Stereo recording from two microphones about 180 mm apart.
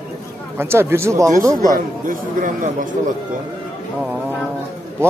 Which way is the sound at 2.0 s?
45° right (ahead or behind).